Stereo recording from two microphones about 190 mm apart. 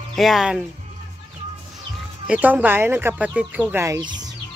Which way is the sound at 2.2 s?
5° right (ahead or behind).